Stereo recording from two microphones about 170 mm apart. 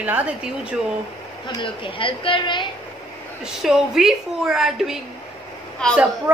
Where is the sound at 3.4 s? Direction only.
Centre (ahead or behind).